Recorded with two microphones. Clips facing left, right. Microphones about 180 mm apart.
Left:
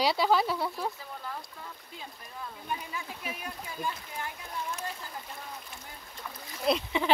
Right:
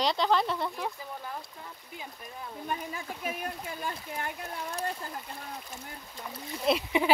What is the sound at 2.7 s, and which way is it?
Speech, 50° right (ahead or behind).